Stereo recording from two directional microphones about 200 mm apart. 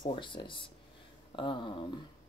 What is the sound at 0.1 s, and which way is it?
Speech, 25° left (ahead or behind).